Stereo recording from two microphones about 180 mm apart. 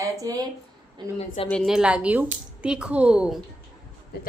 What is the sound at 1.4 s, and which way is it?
A woman's voice, centre (ahead or behind).